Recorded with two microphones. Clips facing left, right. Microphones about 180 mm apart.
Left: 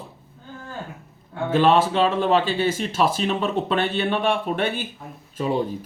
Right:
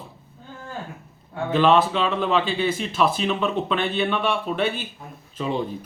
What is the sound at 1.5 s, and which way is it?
Speech, 45° left (ahead or behind).